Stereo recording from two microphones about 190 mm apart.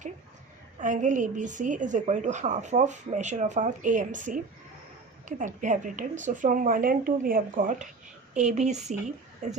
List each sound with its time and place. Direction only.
0.8 s a woman's voice: 45° right (ahead or behind)
5.5 s a woman's voice: 40° right (ahead or behind)